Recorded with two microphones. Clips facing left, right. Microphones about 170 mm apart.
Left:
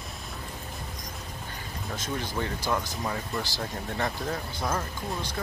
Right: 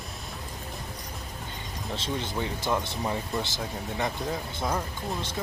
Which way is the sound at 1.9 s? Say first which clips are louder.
Right 1 dB; 25° right (ahead or behind).